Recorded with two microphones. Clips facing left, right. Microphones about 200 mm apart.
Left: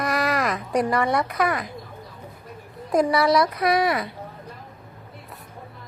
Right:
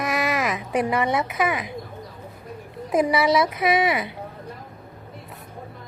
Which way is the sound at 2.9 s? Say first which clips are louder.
Even; 5° right (ahead or behind).